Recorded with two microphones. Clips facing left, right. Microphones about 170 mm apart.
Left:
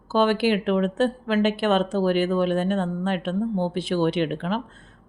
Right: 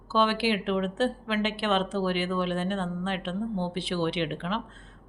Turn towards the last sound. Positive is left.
turn(degrees=45)  # may be behind; listen again after turning